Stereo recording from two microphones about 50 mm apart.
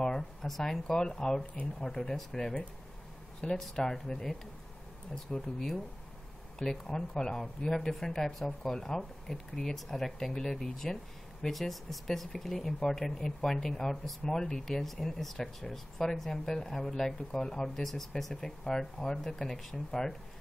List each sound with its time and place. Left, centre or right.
0.0 s speech: centre
1.4 s speech: left
1.8 s speech: centre